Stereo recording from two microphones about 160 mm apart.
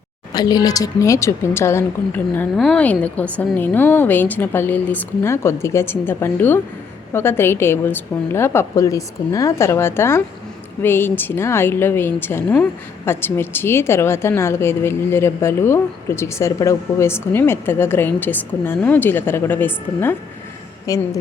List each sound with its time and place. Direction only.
0.3 s a woman's voice: 25° left (ahead or behind)